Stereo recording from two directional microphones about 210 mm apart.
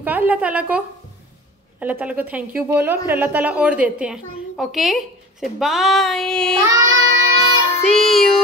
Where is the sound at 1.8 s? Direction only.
5° right (ahead or behind).